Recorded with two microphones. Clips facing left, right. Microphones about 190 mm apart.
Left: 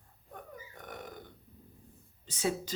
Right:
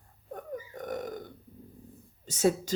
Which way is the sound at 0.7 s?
40° right (ahead or behind).